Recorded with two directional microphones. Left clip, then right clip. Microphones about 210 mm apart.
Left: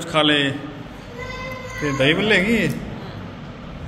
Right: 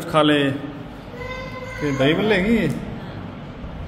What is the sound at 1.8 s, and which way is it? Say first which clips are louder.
Speech: left 1 dB; 10° right (ahead or behind).